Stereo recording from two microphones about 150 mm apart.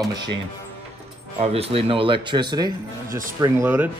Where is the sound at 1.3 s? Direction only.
40° right (ahead or behind).